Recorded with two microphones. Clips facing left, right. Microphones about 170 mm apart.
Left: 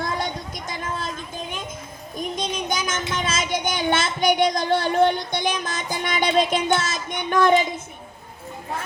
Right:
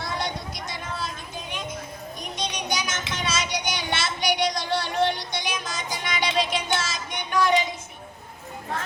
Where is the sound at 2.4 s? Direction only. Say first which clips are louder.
Even; 50° left (ahead or behind).